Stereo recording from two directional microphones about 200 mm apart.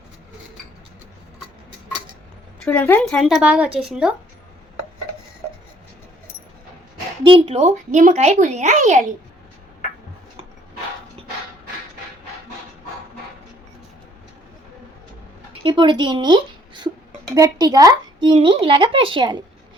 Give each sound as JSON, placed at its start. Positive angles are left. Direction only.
{"t": 2.6, "sound": "a woman's voice", "side_deg": 10}
{"t": 7.3, "sound": "a woman's voice", "side_deg": -30}
{"t": 15.6, "sound": "speech", "side_deg": -25}